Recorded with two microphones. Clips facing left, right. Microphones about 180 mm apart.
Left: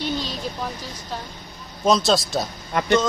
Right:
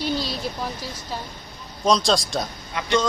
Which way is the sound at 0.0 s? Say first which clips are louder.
Right 1 dB; 40° right (ahead or behind).